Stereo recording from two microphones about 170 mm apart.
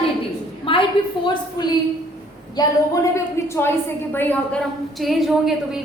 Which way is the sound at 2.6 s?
20° left (ahead or behind).